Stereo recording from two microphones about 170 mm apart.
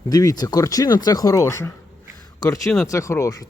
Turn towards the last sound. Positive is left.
turn(degrees=20)  # may be behind; listen again after turning